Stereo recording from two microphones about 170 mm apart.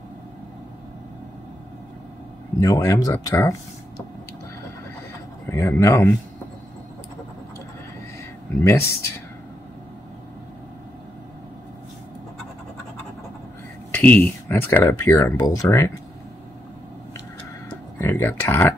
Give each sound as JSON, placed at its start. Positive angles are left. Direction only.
{"t": 2.6, "sound": "speech", "side_deg": 20}
{"t": 5.5, "sound": "speech", "side_deg": 15}
{"t": 8.6, "sound": "speech", "side_deg": 15}
{"t": 13.9, "sound": "speech", "side_deg": 10}
{"t": 17.9, "sound": "speech", "side_deg": 15}